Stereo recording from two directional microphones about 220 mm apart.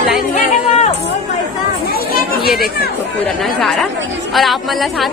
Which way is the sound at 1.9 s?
45° left (ahead or behind).